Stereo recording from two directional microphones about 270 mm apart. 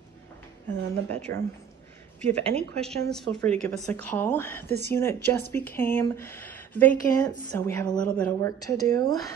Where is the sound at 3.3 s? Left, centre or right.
Centre.